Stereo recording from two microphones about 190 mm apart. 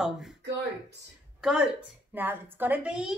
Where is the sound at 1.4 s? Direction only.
5° right (ahead or behind).